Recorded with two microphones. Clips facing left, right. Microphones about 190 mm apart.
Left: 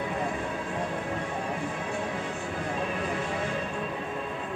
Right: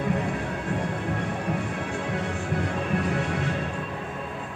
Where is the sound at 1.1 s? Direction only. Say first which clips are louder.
Right 3 dB; 65° right (ahead or behind).